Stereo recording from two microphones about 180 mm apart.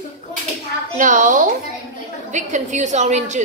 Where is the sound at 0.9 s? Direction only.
45° right (ahead or behind).